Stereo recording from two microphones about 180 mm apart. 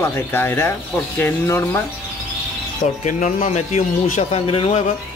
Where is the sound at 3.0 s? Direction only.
45° left (ahead or behind).